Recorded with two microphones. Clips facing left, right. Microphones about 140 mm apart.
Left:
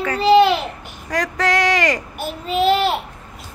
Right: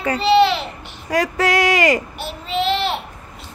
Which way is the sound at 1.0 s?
10° right (ahead or behind).